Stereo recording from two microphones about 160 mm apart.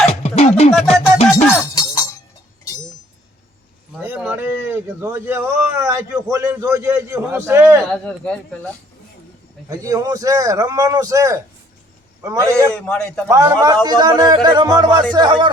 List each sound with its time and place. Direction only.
0.2 s music: 40° left (ahead or behind)
0.7 s music: centre (ahead or behind)
4.0 s speech: 10° right (ahead or behind)
7.9 s speech: 5° left (ahead or behind)
9.6 s a man's voice: 20° right (ahead or behind)
12.7 s speech: 5° left (ahead or behind)
13.3 s a man's voice: 20° right (ahead or behind)